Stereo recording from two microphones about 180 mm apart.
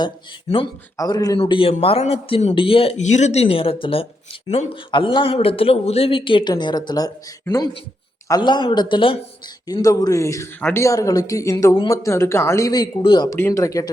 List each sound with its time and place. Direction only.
0.5 s speech: 35° left (ahead or behind)
0.9 s speech: 20° left (ahead or behind)
1.4 s speech: 30° left (ahead or behind)